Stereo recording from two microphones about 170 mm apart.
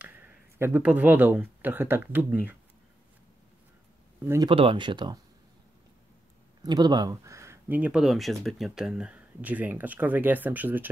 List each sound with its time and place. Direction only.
0.0 s speech: 10° right (ahead or behind)
4.2 s speech: 15° right (ahead or behind)
4.5 s speech: 30° right (ahead or behind)
6.6 s speech: 25° right (ahead or behind)